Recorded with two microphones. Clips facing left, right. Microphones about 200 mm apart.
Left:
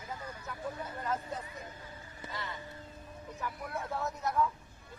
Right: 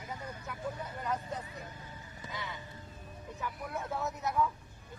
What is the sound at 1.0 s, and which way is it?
Speech, centre (ahead or behind).